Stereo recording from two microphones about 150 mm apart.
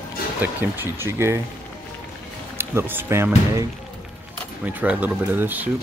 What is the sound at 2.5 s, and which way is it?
Speech, 15° right (ahead or behind).